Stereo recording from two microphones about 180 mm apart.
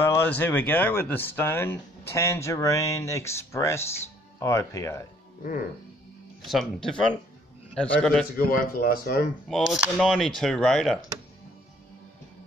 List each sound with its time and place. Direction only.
0.0 s speech: 10° left (ahead or behind)
6.4 s speech: centre (ahead or behind)
8.4 s speech: 55° left (ahead or behind)
9.5 s speech: centre (ahead or behind)